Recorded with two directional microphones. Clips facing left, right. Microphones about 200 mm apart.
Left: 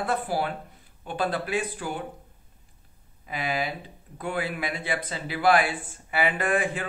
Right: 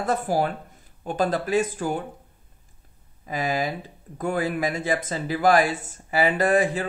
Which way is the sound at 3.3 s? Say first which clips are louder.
Right 4 dB; 45° right (ahead or behind).